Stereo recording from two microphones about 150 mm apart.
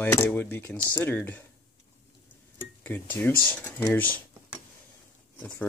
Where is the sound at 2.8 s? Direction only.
10° left (ahead or behind).